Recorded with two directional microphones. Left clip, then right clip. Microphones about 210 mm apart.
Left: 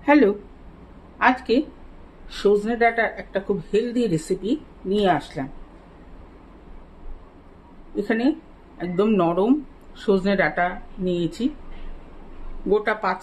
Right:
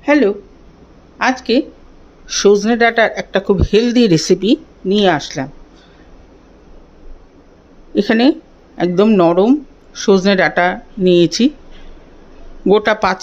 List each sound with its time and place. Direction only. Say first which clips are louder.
0.0 s speech: right 4 dB; 15° right (ahead or behind)
1.1 s a woman's voice: right 4 dB; 25° right (ahead or behind)
7.9 s speech: right 10 dB; 40° right (ahead or behind)
12.6 s speech: right 9 dB; 40° right (ahead or behind)